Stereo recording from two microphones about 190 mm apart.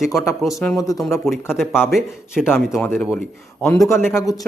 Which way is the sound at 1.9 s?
Centre (ahead or behind).